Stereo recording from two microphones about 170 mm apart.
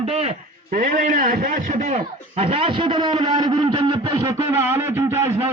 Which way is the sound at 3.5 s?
35° right (ahead or behind).